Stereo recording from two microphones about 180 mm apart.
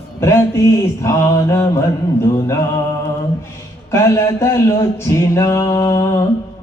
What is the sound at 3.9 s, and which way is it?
Speech, 15° left (ahead or behind).